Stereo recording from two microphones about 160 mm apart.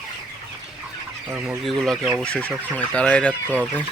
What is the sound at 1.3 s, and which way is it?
Speech, 5° right (ahead or behind).